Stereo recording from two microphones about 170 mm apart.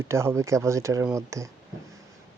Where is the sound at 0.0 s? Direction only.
15° right (ahead or behind).